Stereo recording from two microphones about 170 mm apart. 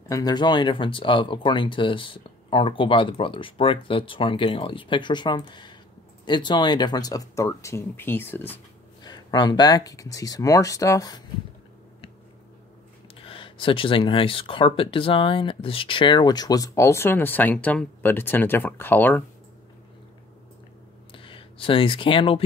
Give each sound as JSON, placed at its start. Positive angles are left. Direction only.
{"t": 0.1, "sound": "speech", "side_deg": 25}
{"t": 9.0, "sound": "speech", "side_deg": 25}
{"t": 13.1, "sound": "speech", "side_deg": 30}
{"t": 21.1, "sound": "a sound", "side_deg": 30}